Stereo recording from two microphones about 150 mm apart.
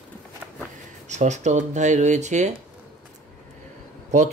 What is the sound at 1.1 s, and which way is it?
Speech, 50° right (ahead or behind).